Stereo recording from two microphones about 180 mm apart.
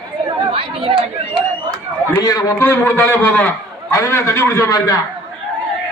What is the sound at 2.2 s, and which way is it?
A man's voice, 15° left (ahead or behind).